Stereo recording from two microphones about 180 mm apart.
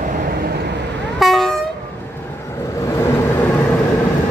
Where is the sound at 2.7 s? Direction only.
15° left (ahead or behind).